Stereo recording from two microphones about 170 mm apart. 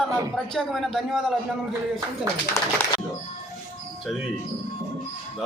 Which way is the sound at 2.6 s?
15° left (ahead or behind).